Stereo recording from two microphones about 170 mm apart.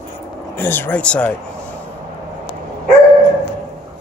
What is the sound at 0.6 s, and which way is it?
Speech, 10° left (ahead or behind).